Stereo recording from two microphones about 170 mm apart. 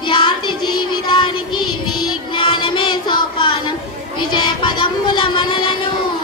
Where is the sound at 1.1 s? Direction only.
25° left (ahead or behind).